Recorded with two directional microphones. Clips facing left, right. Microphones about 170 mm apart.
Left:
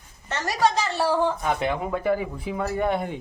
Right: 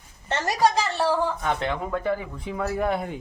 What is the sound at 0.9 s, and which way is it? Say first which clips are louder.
Speech: left 1 dB; 10° left (ahead or behind).